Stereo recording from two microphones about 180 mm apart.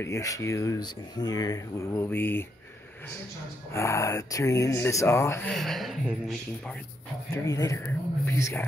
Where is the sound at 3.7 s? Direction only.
15° left (ahead or behind); by 6.4 s 5° right (ahead or behind).